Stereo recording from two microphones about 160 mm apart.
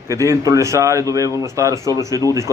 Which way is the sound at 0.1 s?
20° right (ahead or behind).